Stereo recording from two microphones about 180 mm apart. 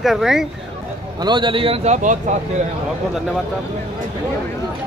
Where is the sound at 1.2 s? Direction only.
25° right (ahead or behind).